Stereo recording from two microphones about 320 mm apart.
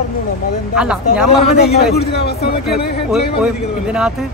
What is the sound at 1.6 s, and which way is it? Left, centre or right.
Speech, left.